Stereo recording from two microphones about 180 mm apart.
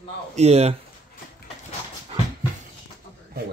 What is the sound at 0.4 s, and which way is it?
Speech, 35° right (ahead or behind).